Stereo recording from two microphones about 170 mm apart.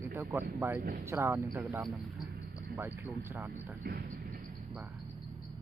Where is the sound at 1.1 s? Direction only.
15° right (ahead or behind).